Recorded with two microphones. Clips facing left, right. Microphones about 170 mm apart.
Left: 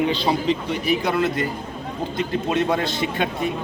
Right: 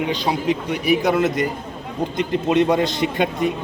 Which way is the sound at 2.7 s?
15° right (ahead or behind).